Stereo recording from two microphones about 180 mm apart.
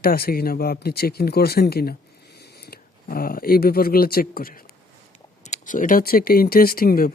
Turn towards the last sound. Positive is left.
turn(degrees=55)  # may be behind; listen again after turning